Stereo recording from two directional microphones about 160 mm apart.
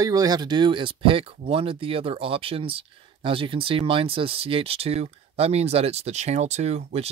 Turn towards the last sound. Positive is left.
turn(degrees=-40)  # may be behind; listen again after turning